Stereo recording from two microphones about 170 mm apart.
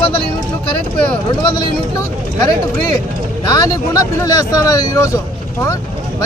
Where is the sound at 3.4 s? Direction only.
20° left (ahead or behind).